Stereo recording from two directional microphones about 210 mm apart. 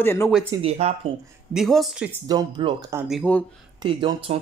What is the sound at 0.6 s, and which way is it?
Speech, 30° right (ahead or behind).